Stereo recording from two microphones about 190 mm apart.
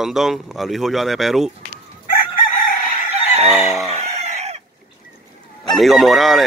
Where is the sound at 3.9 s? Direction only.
35° right (ahead or behind).